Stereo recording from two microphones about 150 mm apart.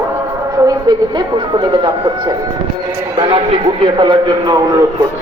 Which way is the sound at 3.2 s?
35° right (ahead or behind).